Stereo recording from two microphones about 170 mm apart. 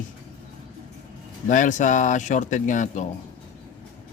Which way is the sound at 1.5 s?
50° left (ahead or behind).